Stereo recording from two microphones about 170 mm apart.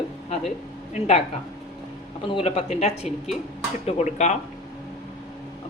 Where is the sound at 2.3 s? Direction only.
35° left (ahead or behind).